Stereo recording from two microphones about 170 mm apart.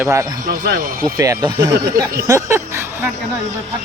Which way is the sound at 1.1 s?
20° right (ahead or behind).